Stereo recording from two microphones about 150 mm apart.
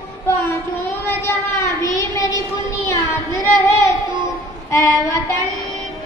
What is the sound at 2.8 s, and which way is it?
Child singing, 20° left (ahead or behind).